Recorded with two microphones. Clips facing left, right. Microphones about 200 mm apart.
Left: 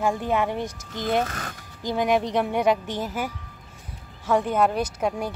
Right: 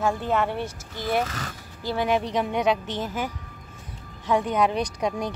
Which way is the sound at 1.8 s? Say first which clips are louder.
Left 2 dB; 15° left (ahead or behind).